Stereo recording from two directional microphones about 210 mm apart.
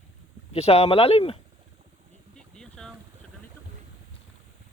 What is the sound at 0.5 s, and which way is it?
Speech, 30° left (ahead or behind).